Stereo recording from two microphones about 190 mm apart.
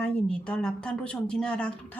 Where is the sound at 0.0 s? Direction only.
5° left (ahead or behind).